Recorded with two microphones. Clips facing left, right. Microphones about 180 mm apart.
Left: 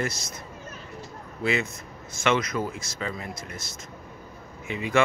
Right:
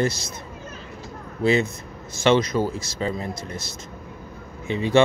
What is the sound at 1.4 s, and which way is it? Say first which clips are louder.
Speech: right 7 dB; 35° right (ahead or behind).